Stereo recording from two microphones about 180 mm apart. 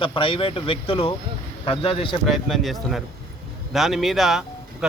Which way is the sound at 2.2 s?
Centre (ahead or behind).